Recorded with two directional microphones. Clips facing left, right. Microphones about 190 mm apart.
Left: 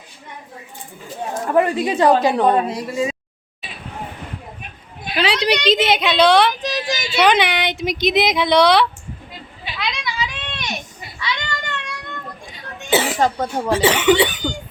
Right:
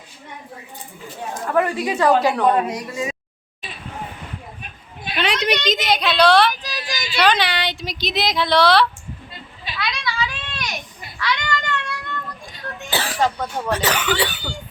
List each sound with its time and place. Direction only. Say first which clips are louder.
1.5 s a woman's voice: left 3 dB; 25° left (ahead or behind)
5.1 s a sound: left 3 dB; 30° left (ahead or behind)
6.1 s speech: even; 20° left (ahead or behind)
9.6 s children playing: even; 20° left (ahead or behind)
11.2 s child singing: right 3 dB; 20° left (ahead or behind)
12.9 s cough: left 8 dB; 20° left (ahead or behind)
13.4 s a woman's voice: left 5 dB; 30° left (ahead or behind)